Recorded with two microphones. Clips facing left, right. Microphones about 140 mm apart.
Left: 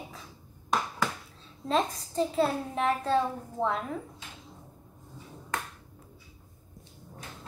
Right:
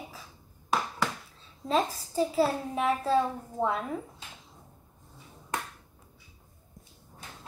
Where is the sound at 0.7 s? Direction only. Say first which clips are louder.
Even; centre (ahead or behind).